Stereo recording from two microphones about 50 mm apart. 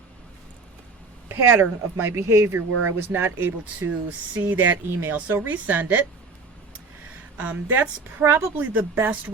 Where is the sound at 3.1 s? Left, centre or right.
Right.